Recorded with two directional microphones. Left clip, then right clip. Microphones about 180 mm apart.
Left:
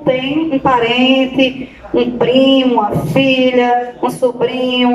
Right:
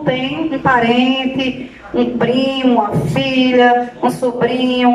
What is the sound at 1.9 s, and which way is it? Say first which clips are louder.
A woman's voice: left 4 dB; 15° left (ahead or behind).